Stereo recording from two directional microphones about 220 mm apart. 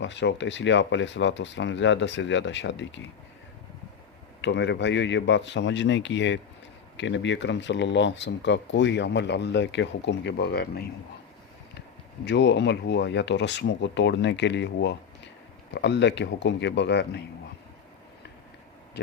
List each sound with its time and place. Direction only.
0.0 s speech: 55° left (ahead or behind)
4.4 s speech: 55° left (ahead or behind)
12.2 s speech: 50° left (ahead or behind)